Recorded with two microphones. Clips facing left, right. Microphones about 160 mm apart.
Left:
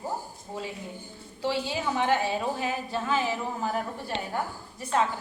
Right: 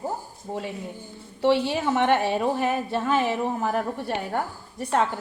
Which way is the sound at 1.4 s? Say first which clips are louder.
Right 8 dB; 65° right (ahead or behind).